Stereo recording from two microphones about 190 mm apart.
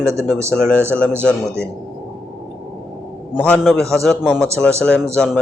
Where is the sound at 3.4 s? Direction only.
5° left (ahead or behind).